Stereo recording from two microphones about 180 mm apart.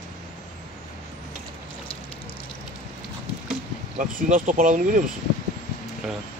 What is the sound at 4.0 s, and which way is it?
Speech, 45° right (ahead or behind).